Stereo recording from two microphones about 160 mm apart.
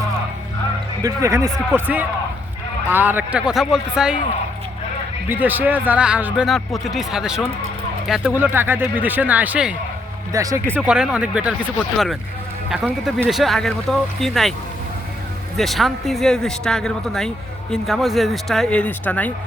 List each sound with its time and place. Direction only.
1.0 s speech: 20° right (ahead or behind)
5.3 s speech: 10° right (ahead or behind)
10.3 s speech: 20° right (ahead or behind)
10.8 s speech: 5° right (ahead or behind)
12.7 s a man's voice: 10° right (ahead or behind)
15.5 s a man's voice: centre (ahead or behind)